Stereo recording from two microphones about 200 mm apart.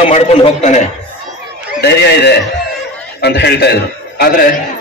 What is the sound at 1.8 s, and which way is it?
A man's voice, 55° left (ahead or behind).